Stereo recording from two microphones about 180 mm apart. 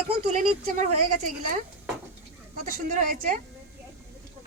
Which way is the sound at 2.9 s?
50° right (ahead or behind).